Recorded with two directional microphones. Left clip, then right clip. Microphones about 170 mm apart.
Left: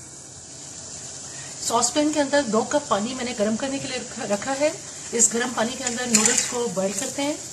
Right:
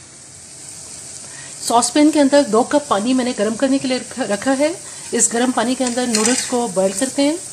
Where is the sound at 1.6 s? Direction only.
55° right (ahead or behind).